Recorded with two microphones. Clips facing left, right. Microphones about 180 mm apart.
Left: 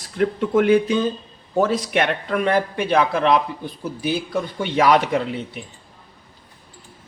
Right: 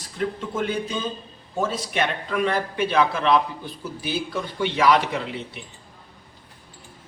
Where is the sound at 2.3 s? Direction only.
50° left (ahead or behind).